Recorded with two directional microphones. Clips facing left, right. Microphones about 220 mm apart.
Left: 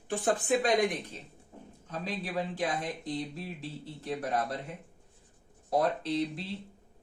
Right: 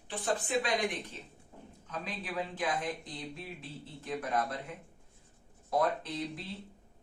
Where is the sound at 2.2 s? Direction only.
40° left (ahead or behind).